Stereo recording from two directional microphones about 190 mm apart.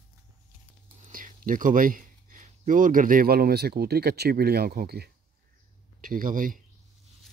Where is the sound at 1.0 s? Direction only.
45° right (ahead or behind).